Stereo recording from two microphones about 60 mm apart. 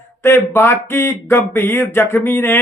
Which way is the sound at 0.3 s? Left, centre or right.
Left.